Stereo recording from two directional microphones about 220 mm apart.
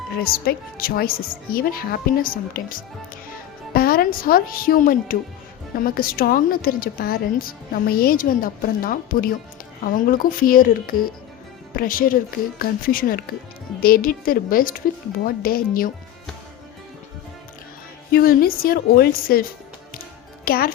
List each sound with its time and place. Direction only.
0.2 s a woman's voice: 45° left (ahead or behind)
18.1 s speech: 40° left (ahead or behind)